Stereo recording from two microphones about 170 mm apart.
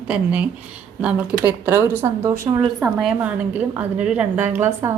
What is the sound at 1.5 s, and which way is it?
A woman's voice, 10° right (ahead or behind).